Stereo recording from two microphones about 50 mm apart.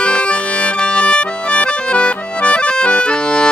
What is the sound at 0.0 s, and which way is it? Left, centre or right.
Accordion, left.